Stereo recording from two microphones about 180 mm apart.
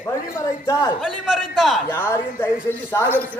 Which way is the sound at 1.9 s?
15° left (ahead or behind).